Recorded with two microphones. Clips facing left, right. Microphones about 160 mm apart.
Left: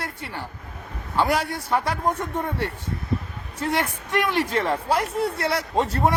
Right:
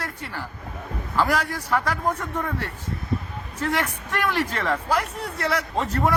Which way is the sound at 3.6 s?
25° left (ahead or behind).